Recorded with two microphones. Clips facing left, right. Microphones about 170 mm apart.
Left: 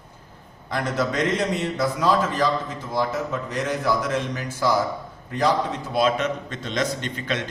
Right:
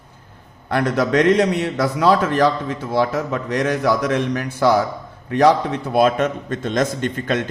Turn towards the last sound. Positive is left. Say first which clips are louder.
# right 7 dB
turn(degrees=-50)  # may be behind; listen again after turning